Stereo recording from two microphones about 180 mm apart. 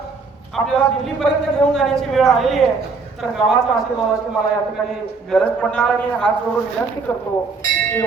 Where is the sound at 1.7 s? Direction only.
Centre (ahead or behind).